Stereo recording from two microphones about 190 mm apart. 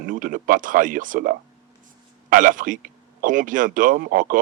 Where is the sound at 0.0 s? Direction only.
45° right (ahead or behind).